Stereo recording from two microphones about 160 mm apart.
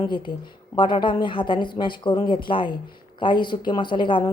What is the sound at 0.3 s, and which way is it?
A woman's voice, 30° left (ahead or behind).